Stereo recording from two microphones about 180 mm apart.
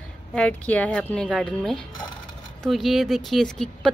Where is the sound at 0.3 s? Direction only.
5° left (ahead or behind).